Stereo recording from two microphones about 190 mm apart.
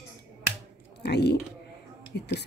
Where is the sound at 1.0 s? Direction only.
60° left (ahead or behind).